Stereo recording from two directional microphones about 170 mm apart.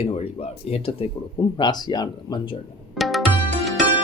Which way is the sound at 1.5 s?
25° left (ahead or behind).